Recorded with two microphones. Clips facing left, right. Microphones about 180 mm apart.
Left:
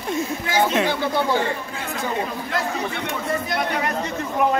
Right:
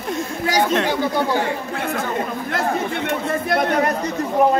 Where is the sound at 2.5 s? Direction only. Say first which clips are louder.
Right 4 dB; 55° right (ahead or behind).